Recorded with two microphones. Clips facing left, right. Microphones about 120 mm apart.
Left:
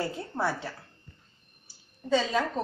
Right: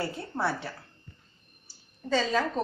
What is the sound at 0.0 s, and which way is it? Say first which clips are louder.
Speech: even; 20° left (ahead or behind).